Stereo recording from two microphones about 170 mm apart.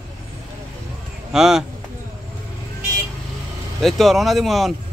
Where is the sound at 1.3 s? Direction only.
5° right (ahead or behind).